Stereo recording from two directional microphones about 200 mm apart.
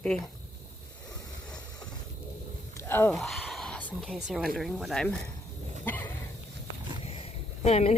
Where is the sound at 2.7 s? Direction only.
10° left (ahead or behind).